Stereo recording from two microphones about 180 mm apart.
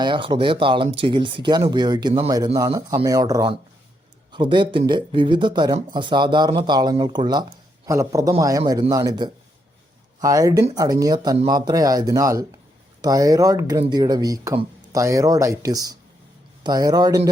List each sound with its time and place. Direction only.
0.0 s speech: 25° right (ahead or behind)